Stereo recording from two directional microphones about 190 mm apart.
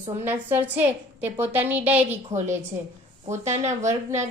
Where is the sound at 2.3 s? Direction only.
40° right (ahead or behind).